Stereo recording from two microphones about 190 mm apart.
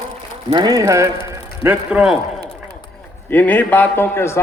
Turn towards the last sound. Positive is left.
turn(degrees=15)  # may be behind; listen again after turning